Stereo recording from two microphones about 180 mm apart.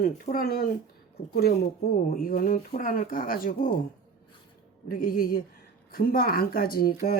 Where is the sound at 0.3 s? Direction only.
55° left (ahead or behind).